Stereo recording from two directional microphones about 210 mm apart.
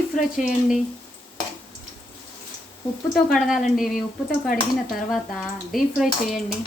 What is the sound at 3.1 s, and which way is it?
Speech, centre (ahead or behind).